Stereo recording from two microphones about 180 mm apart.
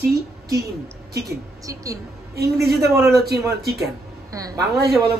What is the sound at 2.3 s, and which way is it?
A man's voice, 60° right (ahead or behind).